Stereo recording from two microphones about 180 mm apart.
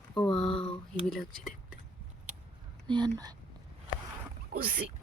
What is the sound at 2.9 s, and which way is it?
Speech, 20° right (ahead or behind).